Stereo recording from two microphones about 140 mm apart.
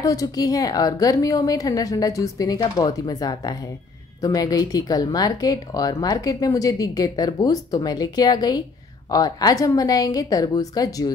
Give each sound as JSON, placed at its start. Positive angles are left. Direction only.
{"t": 0.0, "sound": "speech", "side_deg": 25}